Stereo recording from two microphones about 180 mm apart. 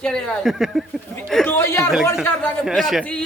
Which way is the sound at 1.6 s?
15° left (ahead or behind).